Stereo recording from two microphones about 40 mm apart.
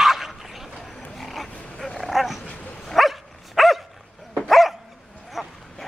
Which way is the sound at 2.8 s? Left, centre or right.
Centre.